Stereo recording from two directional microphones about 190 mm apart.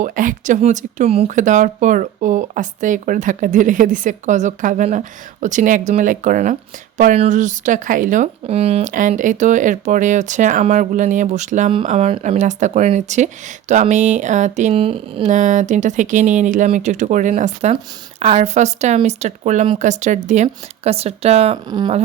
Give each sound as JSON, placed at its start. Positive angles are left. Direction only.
{"t": 0.0, "sound": "speech", "side_deg": -45}